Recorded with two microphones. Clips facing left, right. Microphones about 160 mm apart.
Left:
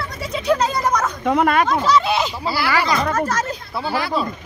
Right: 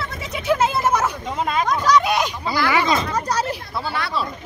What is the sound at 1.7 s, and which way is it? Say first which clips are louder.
Speech: even; centre (ahead or behind).